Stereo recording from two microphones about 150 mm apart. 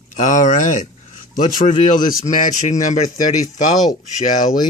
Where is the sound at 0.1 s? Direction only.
55° left (ahead or behind).